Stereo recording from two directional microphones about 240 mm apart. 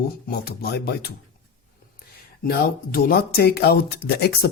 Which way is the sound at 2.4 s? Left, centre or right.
Left.